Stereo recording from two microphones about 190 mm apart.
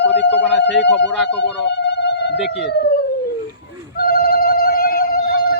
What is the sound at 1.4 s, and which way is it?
Insect, 65° left (ahead or behind).